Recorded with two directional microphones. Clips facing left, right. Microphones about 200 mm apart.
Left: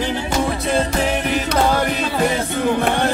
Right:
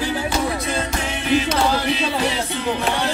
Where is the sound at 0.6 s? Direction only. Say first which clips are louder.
Left 6 dB; 35° left (ahead or behind).